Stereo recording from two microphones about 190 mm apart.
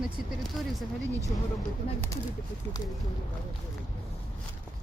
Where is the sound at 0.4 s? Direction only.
Centre (ahead or behind).